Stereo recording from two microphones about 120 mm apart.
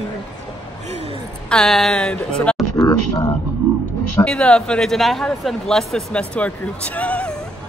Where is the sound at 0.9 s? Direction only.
65° right (ahead or behind).